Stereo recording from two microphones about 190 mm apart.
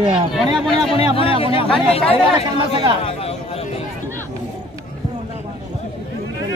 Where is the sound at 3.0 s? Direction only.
30° left (ahead or behind).